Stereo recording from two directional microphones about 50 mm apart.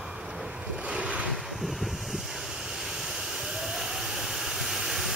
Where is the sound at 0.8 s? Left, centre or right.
Right.